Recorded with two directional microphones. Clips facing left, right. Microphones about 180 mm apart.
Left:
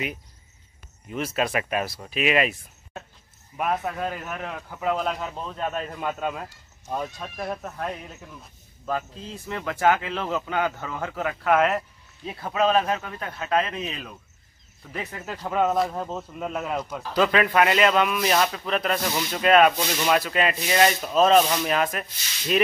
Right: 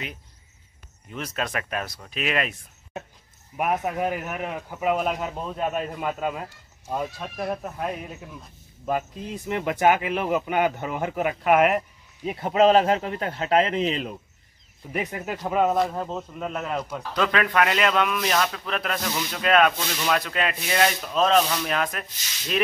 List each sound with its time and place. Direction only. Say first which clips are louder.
1.1 s speech: left 4 dB; 5° left (ahead or behind)
3.5 s speech: right 2 dB; 10° right (ahead or behind); by 14.1 s 25° right (ahead or behind)
14.9 s speech: right 4 dB; 15° right (ahead or behind); by 22.0 s 5° left (ahead or behind)